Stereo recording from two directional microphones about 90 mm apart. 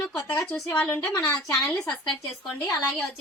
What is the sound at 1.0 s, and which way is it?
Speech, 35° left (ahead or behind).